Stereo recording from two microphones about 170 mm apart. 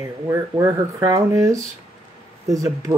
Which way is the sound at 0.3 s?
20° right (ahead or behind).